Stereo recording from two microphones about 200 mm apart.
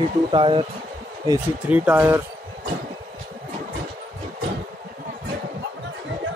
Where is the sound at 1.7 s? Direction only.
10° right (ahead or behind).